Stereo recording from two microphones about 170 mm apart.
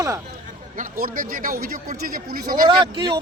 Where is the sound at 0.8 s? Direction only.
55° right (ahead or behind).